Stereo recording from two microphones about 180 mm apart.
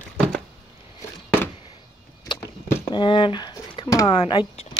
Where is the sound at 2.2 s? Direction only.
20° left (ahead or behind).